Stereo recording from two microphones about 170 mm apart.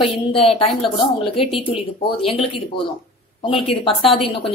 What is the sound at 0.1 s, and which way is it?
Speech, 35° left (ahead or behind).